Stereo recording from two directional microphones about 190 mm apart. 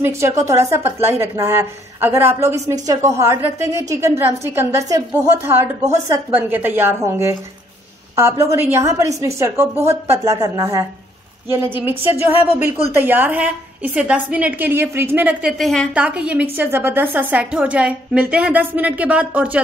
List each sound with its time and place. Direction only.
0.0 s a woman's voice: 15° right (ahead or behind)
12.1 s speech: 30° left (ahead or behind)
12.9 s a woman's voice: 10° right (ahead or behind)